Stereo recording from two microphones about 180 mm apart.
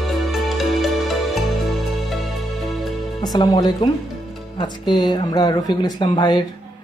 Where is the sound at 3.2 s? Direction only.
20° left (ahead or behind).